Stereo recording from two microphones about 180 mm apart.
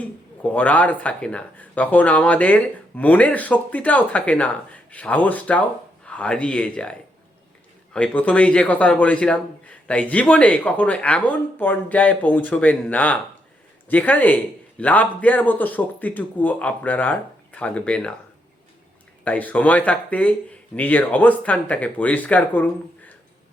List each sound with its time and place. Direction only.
0.4 s a man's voice: 10° left (ahead or behind)
7.9 s a man's voice: 5° left (ahead or behind)
19.2 s a man's voice: 10° left (ahead or behind)